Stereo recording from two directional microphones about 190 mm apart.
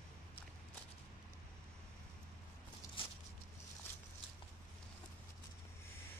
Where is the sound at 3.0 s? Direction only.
30° left (ahead or behind).